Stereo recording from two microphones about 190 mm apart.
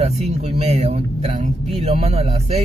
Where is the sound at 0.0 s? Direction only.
35° right (ahead or behind).